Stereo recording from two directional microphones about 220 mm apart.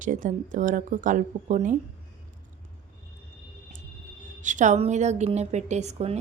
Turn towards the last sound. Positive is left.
turn(degrees=-30)  # may be behind; listen again after turning